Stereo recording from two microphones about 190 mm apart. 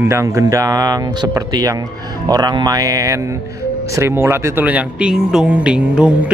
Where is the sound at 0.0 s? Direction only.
15° right (ahead or behind).